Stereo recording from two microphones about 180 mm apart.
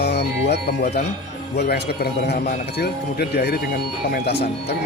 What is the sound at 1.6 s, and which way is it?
Speech, 65° left (ahead or behind).